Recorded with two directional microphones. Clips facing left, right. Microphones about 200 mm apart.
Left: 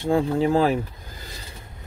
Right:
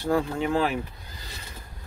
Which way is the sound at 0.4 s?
35° left (ahead or behind).